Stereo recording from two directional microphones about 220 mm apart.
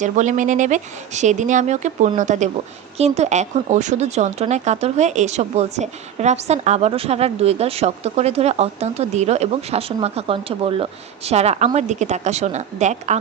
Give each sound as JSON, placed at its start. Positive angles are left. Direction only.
{"t": 0.0, "sound": "speech", "side_deg": -35}